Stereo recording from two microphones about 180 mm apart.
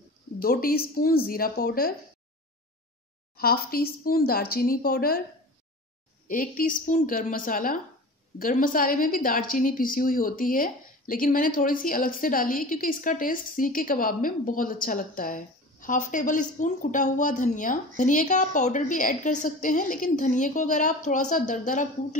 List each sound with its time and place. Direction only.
0.4 s speech: 55° left (ahead or behind)
3.3 s speech: 55° left (ahead or behind)
6.2 s a woman's voice: 50° left (ahead or behind)